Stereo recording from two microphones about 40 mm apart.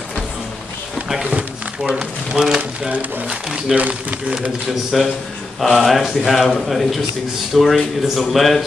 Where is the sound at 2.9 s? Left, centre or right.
Right.